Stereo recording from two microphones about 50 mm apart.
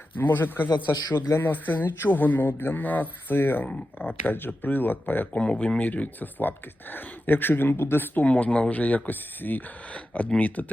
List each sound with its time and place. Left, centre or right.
0.2 s a man's voice: left
5.3 s speech: left
5.8 s speech: left
8.2 s speech: left